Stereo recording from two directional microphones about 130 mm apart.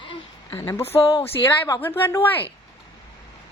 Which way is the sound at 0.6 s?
20° left (ahead or behind).